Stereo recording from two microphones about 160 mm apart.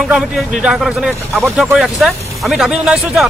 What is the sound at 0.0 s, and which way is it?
Speech, centre (ahead or behind).